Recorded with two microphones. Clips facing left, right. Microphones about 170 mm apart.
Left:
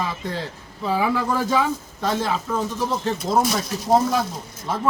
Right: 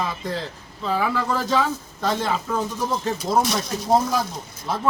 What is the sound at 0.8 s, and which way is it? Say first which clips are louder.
A man's voice: left 2 dB; 10° left (ahead or behind).